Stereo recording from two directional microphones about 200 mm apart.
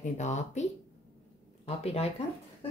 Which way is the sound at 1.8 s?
30° left (ahead or behind).